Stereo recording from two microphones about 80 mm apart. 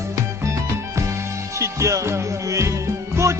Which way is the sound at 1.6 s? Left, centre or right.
Right.